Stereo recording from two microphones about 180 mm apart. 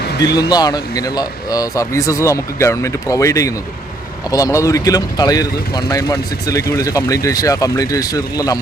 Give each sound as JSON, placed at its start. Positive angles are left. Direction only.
{"t": 0.3, "sound": "speech", "side_deg": 20}